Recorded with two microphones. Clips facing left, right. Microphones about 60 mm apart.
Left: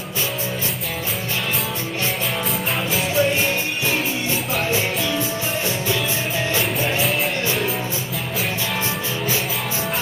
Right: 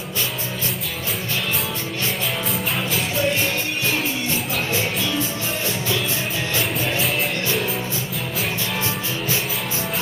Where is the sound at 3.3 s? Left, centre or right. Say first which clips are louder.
Left 1 dB; centre.